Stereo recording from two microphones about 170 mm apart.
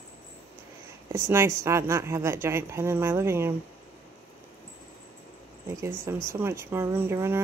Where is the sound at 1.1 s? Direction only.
15° right (ahead or behind).